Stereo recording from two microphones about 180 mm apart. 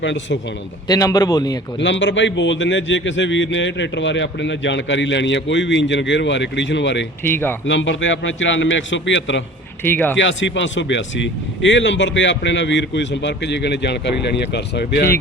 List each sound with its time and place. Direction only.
0.0 s speech: 85° left
0.9 s a man's voice: 20° left (ahead or behind)
1.8 s a man's voice: 90° left
7.3 s speech: 10° left (ahead or behind)
7.7 s a man's voice: 90° left
9.8 s speech: 10° left (ahead or behind)
10.2 s speech: 90° left; by 15.1 s 65° left (ahead or behind)